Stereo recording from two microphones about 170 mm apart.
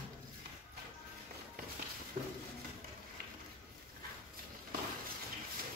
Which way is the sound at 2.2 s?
50° right (ahead or behind).